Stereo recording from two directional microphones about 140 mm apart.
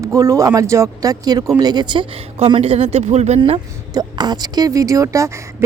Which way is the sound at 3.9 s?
30° right (ahead or behind).